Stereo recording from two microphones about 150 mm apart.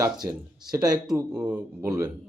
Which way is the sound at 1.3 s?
5° right (ahead or behind).